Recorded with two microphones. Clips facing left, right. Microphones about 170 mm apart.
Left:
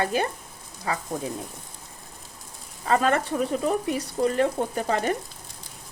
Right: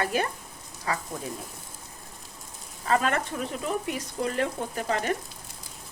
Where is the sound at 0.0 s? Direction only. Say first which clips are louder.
Left 2 dB; 30° left (ahead or behind).